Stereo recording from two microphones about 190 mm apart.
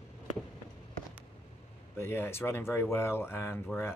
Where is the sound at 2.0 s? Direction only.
15° left (ahead or behind).